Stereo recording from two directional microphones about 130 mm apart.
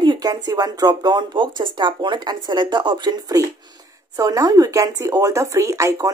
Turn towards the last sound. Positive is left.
turn(degrees=-25)  # may be behind; listen again after turning